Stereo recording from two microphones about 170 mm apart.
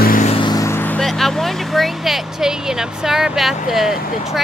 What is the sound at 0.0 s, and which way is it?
Vehicle, 55° left (ahead or behind).